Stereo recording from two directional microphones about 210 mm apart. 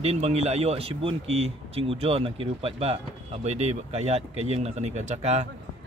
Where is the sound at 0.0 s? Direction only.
30° right (ahead or behind).